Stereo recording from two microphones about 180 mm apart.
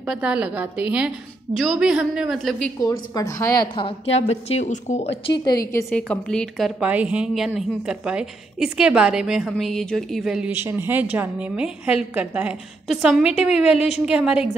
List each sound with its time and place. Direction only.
0.1 s a woman's voice: 5° right (ahead or behind)
2.8 s a woman's voice: 20° left (ahead or behind)
5.9 s a woman's voice: 5° left (ahead or behind)
6.8 s a woman's voice: 5° right (ahead or behind)